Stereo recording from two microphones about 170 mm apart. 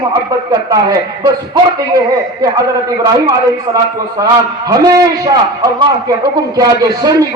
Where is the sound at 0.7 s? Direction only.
20° right (ahead or behind).